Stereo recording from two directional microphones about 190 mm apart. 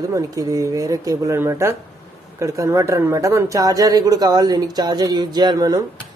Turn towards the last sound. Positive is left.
turn(degrees=-20)  # may be behind; listen again after turning